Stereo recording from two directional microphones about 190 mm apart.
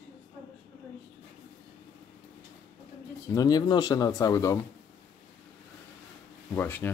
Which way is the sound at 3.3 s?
20° left (ahead or behind).